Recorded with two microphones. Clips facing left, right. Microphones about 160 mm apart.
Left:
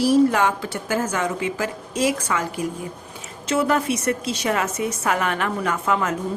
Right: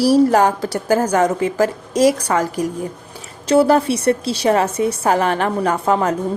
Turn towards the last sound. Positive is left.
turn(degrees=-35)  # may be behind; listen again after turning